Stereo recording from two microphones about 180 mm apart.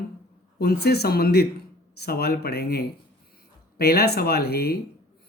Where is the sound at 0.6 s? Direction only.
60° left (ahead or behind).